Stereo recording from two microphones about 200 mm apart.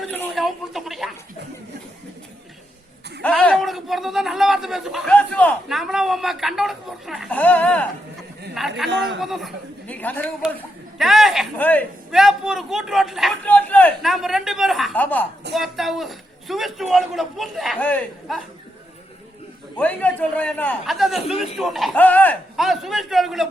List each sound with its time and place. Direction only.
0.3 s a sound: centre (ahead or behind)
3.2 s a man's voice: 5° left (ahead or behind)
8.9 s a man's voice: 65° right (ahead or behind)
9.2 s speech: centre (ahead or behind)
10.9 s a man's voice: centre (ahead or behind)
12.2 s a man's voice: 5° right (ahead or behind)
19.7 s a man's voice: 5° left (ahead or behind)